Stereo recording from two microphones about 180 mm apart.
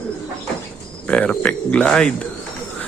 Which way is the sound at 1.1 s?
5° left (ahead or behind).